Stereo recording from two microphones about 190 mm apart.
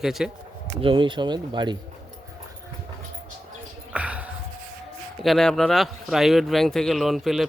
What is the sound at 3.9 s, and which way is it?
Music, 5° right (ahead or behind).